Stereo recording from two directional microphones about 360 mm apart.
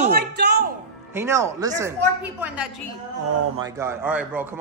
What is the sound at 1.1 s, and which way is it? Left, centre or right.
A man's voice, centre.